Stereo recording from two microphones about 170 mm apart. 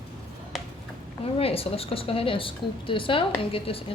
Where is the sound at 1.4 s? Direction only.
35° left (ahead or behind).